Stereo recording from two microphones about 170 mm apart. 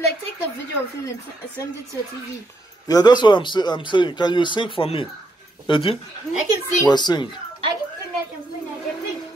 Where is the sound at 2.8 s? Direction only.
25° left (ahead or behind).